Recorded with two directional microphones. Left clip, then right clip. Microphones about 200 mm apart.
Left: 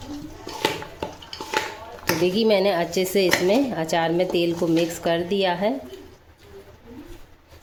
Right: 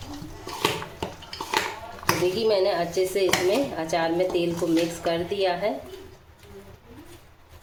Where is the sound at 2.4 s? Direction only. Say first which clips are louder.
Left 5 dB; 45° left (ahead or behind).